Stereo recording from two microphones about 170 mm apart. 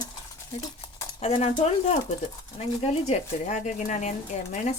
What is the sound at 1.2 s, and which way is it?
Speech, 40° left (ahead or behind).